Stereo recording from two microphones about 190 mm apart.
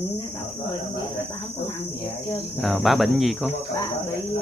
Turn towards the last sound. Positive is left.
turn(degrees=0)  # may be behind; listen again after turning